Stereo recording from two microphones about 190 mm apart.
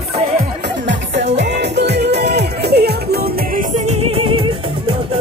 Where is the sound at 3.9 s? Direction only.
30° right (ahead or behind).